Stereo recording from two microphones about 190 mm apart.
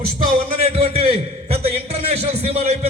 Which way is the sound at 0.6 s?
30° right (ahead or behind).